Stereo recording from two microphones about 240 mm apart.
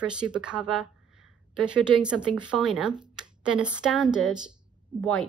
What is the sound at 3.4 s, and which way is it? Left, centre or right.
Speech, centre.